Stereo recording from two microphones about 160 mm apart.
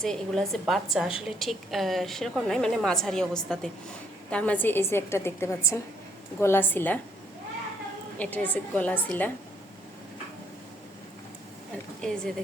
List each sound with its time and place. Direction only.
0.0 s a woman's voice: 5° left (ahead or behind)
8.2 s a woman's voice: 10° left (ahead or behind)
11.9 s speech: 5° left (ahead or behind)